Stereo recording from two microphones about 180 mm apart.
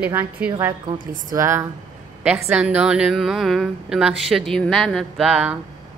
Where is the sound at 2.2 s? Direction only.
5° right (ahead or behind).